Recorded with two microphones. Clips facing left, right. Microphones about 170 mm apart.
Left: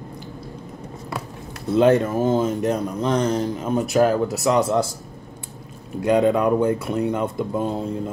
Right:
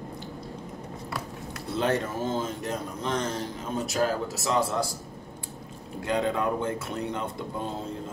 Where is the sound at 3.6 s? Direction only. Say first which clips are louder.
Left 8 dB; 60° left (ahead or behind).